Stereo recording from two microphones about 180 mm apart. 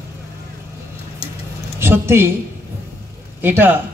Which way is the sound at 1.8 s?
15° right (ahead or behind).